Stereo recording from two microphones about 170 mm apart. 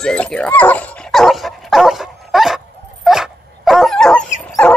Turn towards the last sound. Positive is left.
turn(degrees=5)  # may be behind; listen again after turning